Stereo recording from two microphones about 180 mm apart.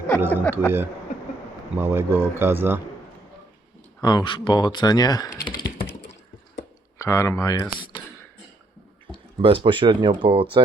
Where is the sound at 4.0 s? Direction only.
20° left (ahead or behind).